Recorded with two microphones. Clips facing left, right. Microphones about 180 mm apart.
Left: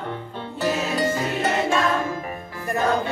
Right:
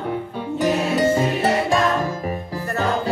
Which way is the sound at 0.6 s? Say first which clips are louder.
Right 4 dB; 25° right (ahead or behind).